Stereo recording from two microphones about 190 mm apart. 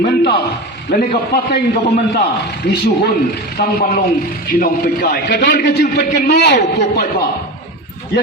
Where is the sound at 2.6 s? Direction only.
60° left (ahead or behind).